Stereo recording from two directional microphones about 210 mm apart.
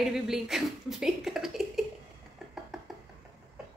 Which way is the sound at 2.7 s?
Centre (ahead or behind).